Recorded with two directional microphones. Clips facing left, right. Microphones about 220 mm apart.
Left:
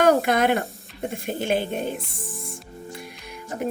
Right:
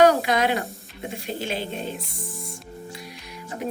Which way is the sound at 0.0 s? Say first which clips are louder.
Even; 50° left (ahead or behind).